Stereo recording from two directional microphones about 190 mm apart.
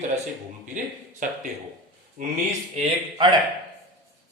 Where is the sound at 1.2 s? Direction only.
45° right (ahead or behind).